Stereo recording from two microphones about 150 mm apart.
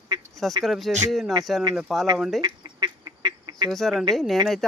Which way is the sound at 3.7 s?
Centre (ahead or behind).